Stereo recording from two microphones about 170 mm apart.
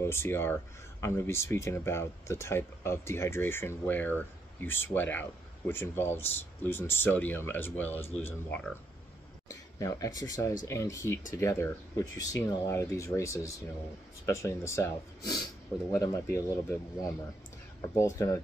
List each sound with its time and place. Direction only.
0.0 s speech: 15° left (ahead or behind)
9.8 s speech: 20° left (ahead or behind)